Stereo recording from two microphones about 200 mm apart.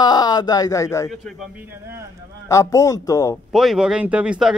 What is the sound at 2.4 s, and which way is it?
Speech, 15° left (ahead or behind).